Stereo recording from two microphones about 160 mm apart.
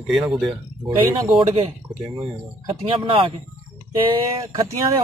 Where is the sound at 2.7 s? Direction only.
35° right (ahead or behind).